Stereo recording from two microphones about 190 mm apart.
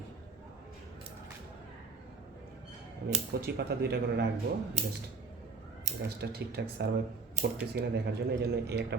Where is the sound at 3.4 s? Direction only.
60° right (ahead or behind).